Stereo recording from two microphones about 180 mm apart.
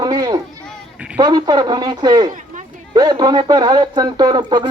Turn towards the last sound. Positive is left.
turn(degrees=-25)  # may be behind; listen again after turning